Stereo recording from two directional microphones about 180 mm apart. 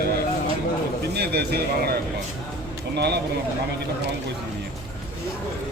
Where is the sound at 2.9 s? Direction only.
65° right (ahead or behind).